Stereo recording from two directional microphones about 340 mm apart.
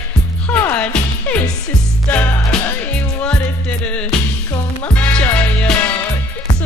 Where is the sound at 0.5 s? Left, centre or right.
Centre.